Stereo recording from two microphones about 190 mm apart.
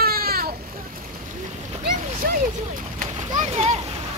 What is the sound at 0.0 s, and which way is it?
Boat, 50° right (ahead or behind).